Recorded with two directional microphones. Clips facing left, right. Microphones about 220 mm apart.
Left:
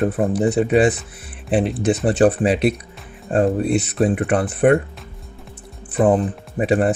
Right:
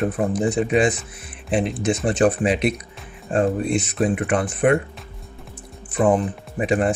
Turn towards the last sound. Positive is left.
turn(degrees=35)  # may be behind; listen again after turning